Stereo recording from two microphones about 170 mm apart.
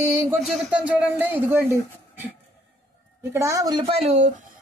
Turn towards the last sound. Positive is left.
turn(degrees=-40)  # may be behind; listen again after turning